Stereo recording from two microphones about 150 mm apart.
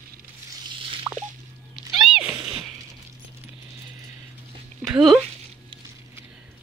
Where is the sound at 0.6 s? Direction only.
35° right (ahead or behind).